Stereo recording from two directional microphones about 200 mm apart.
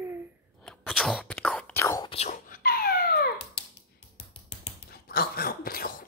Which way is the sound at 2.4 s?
45° left (ahead or behind).